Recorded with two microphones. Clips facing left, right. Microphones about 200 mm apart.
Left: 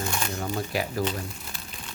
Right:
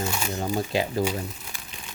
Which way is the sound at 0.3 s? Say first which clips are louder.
Right 5 dB; 20° right (ahead or behind).